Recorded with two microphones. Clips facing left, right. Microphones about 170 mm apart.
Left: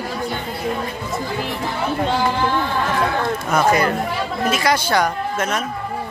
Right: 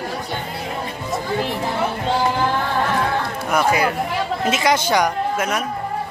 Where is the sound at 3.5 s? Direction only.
10° right (ahead or behind).